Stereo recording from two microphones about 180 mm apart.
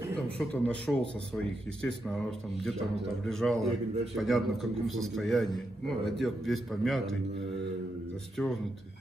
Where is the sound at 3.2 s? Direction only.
Centre (ahead or behind).